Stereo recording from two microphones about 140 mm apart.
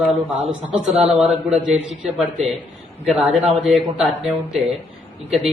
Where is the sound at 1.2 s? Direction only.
5° right (ahead or behind).